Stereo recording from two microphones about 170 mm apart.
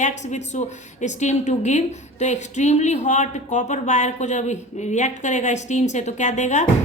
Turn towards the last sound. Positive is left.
turn(degrees=45)  # may be behind; listen again after turning